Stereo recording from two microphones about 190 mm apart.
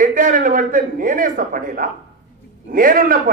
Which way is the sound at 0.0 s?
45° right (ahead or behind).